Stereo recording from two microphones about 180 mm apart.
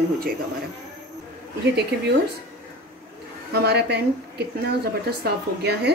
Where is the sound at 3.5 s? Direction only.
65° right (ahead or behind).